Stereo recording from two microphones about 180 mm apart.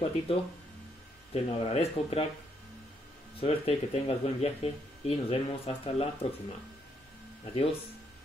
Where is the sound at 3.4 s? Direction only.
35° left (ahead or behind).